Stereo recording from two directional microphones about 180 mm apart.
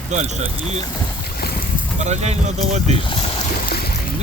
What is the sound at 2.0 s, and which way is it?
Speech, 40° right (ahead or behind).